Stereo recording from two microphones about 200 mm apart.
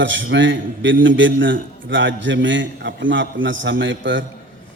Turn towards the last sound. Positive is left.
turn(degrees=-70)  # may be behind; listen again after turning